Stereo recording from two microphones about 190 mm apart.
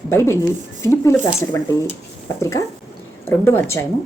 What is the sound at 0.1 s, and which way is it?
A woman's voice, 15° left (ahead or behind).